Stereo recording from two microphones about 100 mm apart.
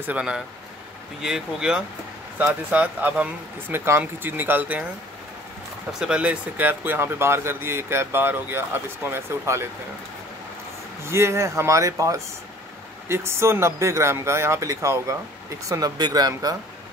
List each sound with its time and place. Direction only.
0.0 s speech: 10° right (ahead or behind)
3.7 s speech: 25° right (ahead or behind)
5.9 s speech: 10° right (ahead or behind); by 9.7 s 25° right (ahead or behind)
11.1 s speech: 25° right (ahead or behind)